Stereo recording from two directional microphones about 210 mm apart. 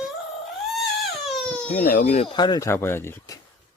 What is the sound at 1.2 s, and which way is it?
Crying, centre (ahead or behind).